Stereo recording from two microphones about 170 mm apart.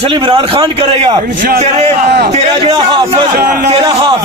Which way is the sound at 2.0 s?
70° right (ahead or behind).